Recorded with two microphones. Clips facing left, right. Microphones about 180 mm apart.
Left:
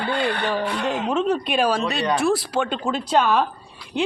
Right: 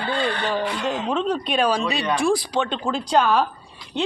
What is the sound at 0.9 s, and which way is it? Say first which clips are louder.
A woman's voice: left 3 dB; 5° left (ahead or behind).